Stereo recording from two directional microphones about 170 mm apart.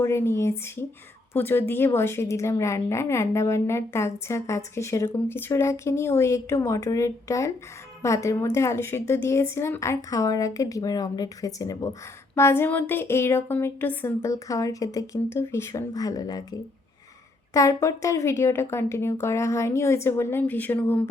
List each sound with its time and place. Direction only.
0.0 s a woman's voice: 15° left (ahead or behind)